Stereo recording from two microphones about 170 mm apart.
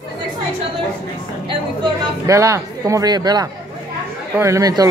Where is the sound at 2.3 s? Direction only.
20° right (ahead or behind).